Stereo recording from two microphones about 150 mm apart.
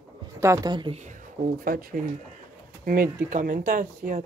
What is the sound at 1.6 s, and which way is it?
Speech, 75° right (ahead or behind).